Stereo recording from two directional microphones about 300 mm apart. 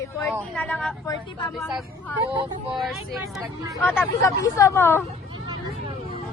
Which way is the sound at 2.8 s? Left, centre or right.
Centre.